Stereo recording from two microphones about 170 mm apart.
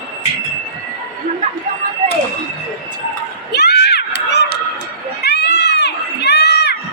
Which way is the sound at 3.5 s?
75° left (ahead or behind).